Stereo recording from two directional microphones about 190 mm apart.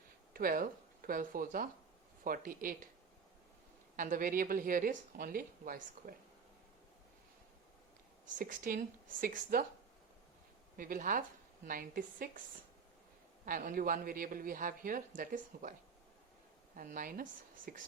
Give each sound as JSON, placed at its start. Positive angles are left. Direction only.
{"t": 0.3, "sound": "a man's voice", "side_deg": -50}
{"t": 3.9, "sound": "a man's voice", "side_deg": -45}
{"t": 8.3, "sound": "a man's voice", "side_deg": -45}
{"t": 10.8, "sound": "a man's voice", "side_deg": -45}
{"t": 13.4, "sound": "a man's voice", "side_deg": -45}
{"t": 16.7, "sound": "a man's voice", "side_deg": -45}